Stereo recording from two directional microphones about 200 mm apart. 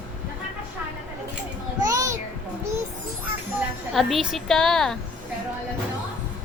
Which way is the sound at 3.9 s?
Centre (ahead or behind).